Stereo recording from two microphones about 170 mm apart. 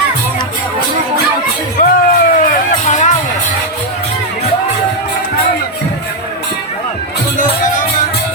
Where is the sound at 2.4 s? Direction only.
50° left (ahead or behind).